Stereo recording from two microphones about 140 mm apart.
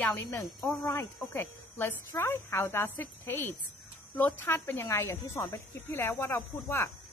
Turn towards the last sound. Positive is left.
turn(degrees=20)  # may be behind; listen again after turning